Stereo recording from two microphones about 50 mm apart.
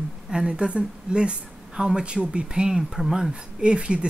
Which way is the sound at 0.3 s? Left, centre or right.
Centre.